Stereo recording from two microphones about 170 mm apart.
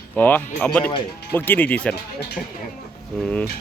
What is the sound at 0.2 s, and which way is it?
Speech, 10° left (ahead or behind).